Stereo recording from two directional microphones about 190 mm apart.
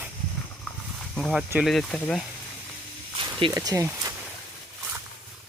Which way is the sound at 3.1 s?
25° right (ahead or behind).